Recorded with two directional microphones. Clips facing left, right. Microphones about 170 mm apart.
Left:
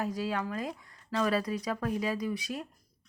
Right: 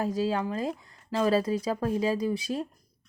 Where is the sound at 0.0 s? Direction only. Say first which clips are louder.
Right 5 dB; 30° right (ahead or behind).